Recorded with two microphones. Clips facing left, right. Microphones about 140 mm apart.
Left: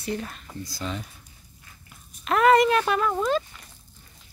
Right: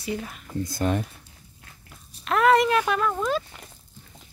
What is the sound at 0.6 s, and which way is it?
Speech, 55° right (ahead or behind).